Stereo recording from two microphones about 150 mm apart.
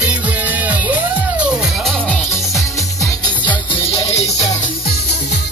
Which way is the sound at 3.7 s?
40° left (ahead or behind).